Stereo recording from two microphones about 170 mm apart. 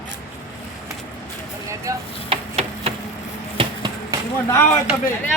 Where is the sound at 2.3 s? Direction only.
35° right (ahead or behind).